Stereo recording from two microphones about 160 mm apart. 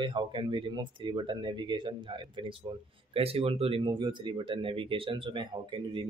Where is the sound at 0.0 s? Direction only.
30° right (ahead or behind).